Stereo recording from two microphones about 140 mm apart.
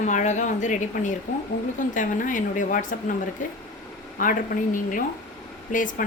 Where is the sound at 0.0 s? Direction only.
60° left (ahead or behind).